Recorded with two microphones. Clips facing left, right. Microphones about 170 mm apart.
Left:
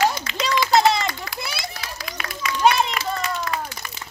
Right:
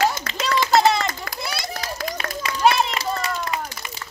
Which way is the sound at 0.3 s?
45° right (ahead or behind).